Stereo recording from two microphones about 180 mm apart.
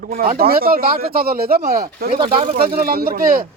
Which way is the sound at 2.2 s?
30° right (ahead or behind).